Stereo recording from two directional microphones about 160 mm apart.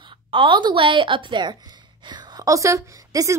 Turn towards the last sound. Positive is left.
turn(degrees=-20)  # may be behind; listen again after turning